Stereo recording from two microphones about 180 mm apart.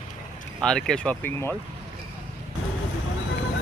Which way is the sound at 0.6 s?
5° left (ahead or behind).